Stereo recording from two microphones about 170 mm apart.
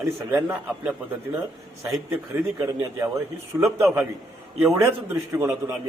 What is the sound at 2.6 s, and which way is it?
A man's voice, 15° right (ahead or behind).